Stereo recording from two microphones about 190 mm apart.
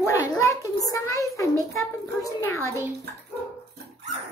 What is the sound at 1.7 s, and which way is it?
A child's voice, 15° left (ahead or behind).